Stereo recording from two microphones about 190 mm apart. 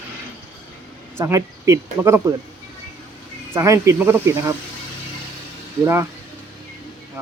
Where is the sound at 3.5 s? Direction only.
15° right (ahead or behind).